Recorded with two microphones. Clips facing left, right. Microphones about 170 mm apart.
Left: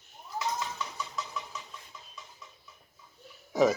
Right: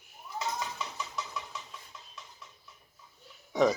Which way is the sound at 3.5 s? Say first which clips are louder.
Left 1 dB; centre (ahead or behind).